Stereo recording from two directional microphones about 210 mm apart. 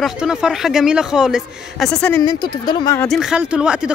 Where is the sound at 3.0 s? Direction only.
Centre (ahead or behind).